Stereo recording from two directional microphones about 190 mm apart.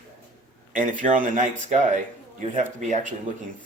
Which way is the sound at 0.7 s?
45° right (ahead or behind).